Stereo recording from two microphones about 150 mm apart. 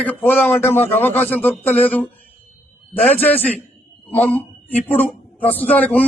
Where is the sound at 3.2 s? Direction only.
10° left (ahead or behind).